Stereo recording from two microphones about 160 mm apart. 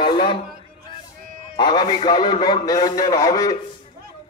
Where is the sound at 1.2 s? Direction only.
65° right (ahead or behind).